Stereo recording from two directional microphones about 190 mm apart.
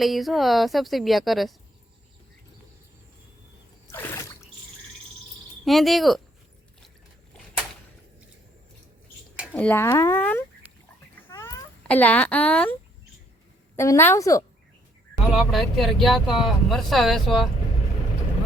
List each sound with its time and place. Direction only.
0.0 s speech: centre (ahead or behind)
3.8 s a sound: 10° left (ahead or behind)
5.6 s speech: centre (ahead or behind)
9.5 s speech: 10° left (ahead or behind)
11.3 s a sound: 20° left (ahead or behind)
11.9 s speech: 5° left (ahead or behind)
13.7 s speech: 15° left (ahead or behind)
15.3 s speech: centre (ahead or behind)